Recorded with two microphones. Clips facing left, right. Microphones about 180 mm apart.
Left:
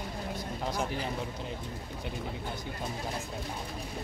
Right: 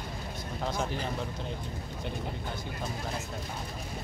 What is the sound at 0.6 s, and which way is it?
Speech, 10° left (ahead or behind).